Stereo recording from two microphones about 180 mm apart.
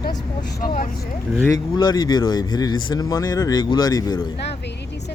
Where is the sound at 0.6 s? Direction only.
55° left (ahead or behind).